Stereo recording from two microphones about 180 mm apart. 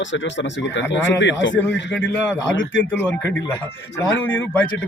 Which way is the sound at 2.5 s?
90° left.